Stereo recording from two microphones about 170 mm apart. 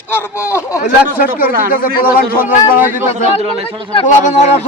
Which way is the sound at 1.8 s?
60° left (ahead or behind).